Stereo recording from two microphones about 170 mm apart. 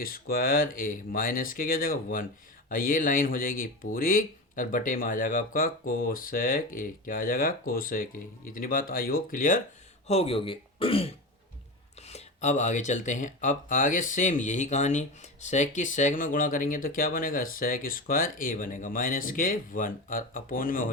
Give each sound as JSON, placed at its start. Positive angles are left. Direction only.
{"t": 0.0, "sound": "speech", "side_deg": 60}
{"t": 10.1, "sound": "speech", "side_deg": 35}